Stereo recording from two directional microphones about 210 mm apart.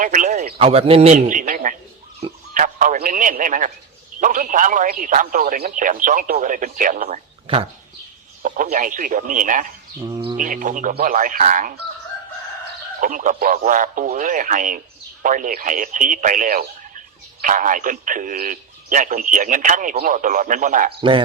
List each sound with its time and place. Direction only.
0.0 s a man's voice: 40° right (ahead or behind)
2.2 s a sound: 40° right (ahead or behind)
4.2 s a man's voice: 40° right (ahead or behind)
7.4 s speech: 25° right (ahead or behind)
8.4 s a man's voice: 40° right (ahead or behind)
13.0 s a man's voice: 40° right (ahead or behind)
21.0 s speech: 25° right (ahead or behind)